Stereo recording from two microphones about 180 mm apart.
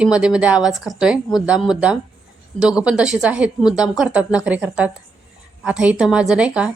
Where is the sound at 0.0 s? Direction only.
5° right (ahead or behind).